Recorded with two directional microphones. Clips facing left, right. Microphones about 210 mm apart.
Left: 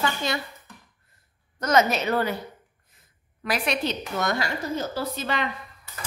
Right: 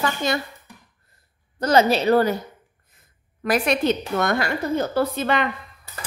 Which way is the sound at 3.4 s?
45° right (ahead or behind).